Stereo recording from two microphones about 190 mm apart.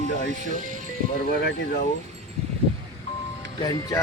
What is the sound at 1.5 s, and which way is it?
Speech, 50° left (ahead or behind).